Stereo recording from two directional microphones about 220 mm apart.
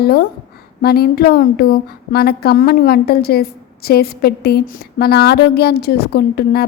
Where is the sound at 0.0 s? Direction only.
45° left (ahead or behind).